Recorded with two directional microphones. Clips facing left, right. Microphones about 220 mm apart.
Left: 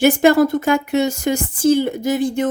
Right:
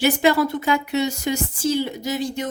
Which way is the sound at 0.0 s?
50° left (ahead or behind).